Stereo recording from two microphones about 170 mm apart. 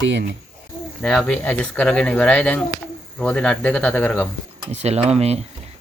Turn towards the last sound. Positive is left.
turn(degrees=-40)  # may be behind; listen again after turning